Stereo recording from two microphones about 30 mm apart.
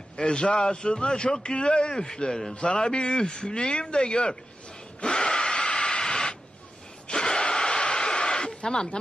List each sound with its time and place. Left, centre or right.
0.2 s a man's voice: left
5.0 s a sound: left
8.6 s a man's voice: left